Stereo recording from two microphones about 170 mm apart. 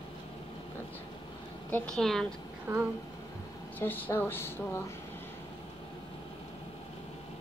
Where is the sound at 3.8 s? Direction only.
10° left (ahead or behind).